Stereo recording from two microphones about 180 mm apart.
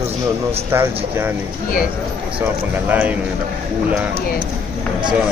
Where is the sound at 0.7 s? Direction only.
15° right (ahead or behind).